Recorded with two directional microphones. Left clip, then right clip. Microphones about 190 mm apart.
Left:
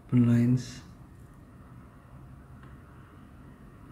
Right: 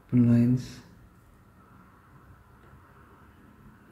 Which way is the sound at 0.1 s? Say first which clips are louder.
Right 2 dB; centre (ahead or behind).